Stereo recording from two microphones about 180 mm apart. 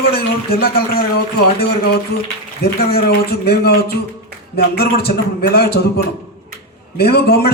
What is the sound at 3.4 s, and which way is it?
A man's voice, 60° left (ahead or behind).